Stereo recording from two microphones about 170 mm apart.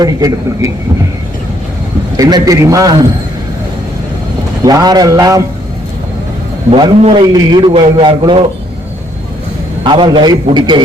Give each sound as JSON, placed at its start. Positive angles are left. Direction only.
{"t": 0.0, "sound": "a man's voice", "side_deg": -20}
{"t": 2.1, "sound": "a man's voice", "side_deg": -20}
{"t": 4.6, "sound": "a man's voice", "side_deg": -20}
{"t": 6.7, "sound": "a man's voice", "side_deg": -30}
{"t": 9.8, "sound": "a man's voice", "side_deg": -30}